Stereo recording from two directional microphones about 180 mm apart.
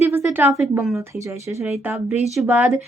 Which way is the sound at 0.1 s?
10° right (ahead or behind).